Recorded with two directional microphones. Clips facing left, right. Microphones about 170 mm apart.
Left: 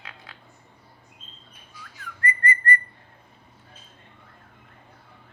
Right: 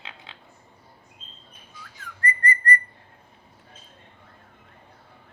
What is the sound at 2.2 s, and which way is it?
Whistling, 35° right (ahead or behind).